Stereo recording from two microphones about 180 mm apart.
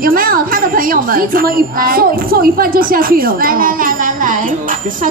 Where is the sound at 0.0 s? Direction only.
50° right (ahead or behind).